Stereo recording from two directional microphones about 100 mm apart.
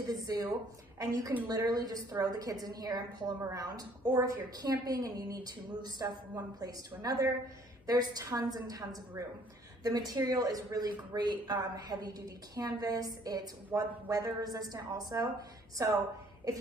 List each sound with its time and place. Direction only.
0.1 s speech: 40° right (ahead or behind)
1.5 s speech: 40° right (ahead or behind)